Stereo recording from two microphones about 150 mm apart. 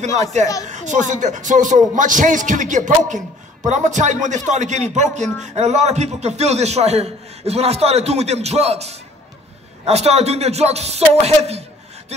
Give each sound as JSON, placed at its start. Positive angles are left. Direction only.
{"t": 0.0, "sound": "speech", "side_deg": -50}